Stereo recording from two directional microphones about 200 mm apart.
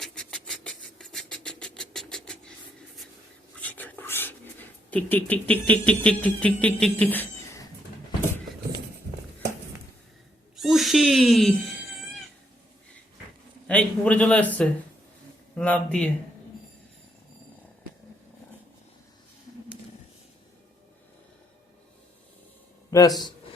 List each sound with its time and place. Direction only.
0.0 s vehicle: 5° left (ahead or behind)
3.6 s a sound: 10° left (ahead or behind)
4.9 s speech: 10° left (ahead or behind)
10.6 s owl: centre (ahead or behind)
13.7 s a man's voice: 5° left (ahead or behind)
22.9 s a man's voice: 20° left (ahead or behind)